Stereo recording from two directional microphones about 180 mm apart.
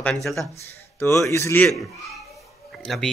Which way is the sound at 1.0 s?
15° left (ahead or behind).